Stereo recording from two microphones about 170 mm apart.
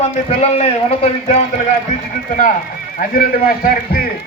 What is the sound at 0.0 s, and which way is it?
A man's voice, 40° left (ahead or behind).